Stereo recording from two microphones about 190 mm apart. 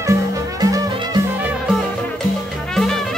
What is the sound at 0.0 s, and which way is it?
Music, 15° right (ahead or behind).